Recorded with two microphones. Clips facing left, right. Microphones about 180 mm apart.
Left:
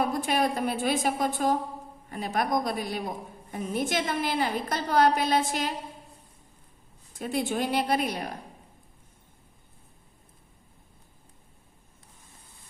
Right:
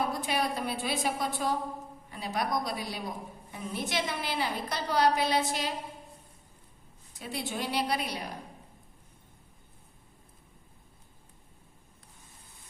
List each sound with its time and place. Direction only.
0.1 s a woman's voice: 50° left (ahead or behind)
7.1 s a woman's voice: 50° left (ahead or behind)